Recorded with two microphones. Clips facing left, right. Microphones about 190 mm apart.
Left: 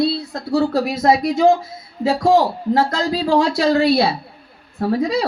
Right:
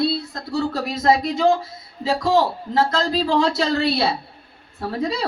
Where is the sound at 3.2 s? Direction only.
50° left (ahead or behind).